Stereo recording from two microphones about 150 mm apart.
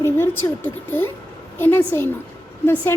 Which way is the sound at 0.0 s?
15° left (ahead or behind).